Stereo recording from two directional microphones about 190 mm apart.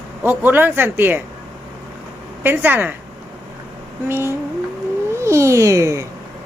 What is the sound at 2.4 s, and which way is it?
Speech, 10° right (ahead or behind).